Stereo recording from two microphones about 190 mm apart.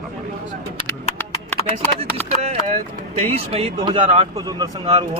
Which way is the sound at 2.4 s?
35° right (ahead or behind).